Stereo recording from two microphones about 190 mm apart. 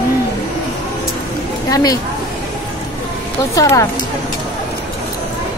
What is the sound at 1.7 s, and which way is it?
Speech, 20° left (ahead or behind).